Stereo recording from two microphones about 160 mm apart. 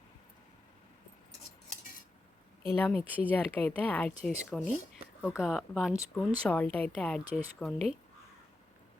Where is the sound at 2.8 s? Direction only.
10° left (ahead or behind).